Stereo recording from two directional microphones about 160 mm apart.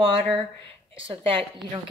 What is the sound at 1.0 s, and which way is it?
Speech, 35° right (ahead or behind).